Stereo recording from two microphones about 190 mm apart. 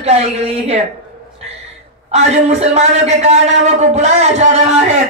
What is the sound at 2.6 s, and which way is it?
Speech, 35° right (ahead or behind).